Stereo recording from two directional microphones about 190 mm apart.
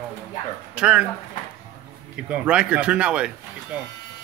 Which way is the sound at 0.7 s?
5° right (ahead or behind).